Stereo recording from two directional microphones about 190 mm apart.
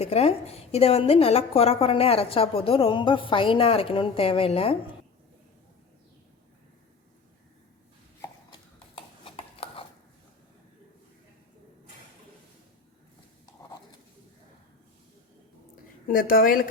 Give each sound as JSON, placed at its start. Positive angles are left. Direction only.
{"t": 0.0, "sound": "a woman's voice", "side_deg": 35}
{"t": 9.0, "sound": "a sound", "side_deg": 30}
{"t": 16.1, "sound": "a woman's voice", "side_deg": 50}